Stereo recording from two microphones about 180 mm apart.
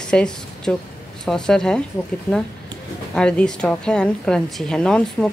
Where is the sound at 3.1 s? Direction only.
5° left (ahead or behind).